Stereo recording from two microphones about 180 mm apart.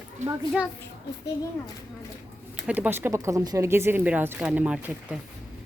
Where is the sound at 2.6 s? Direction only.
10° right (ahead or behind).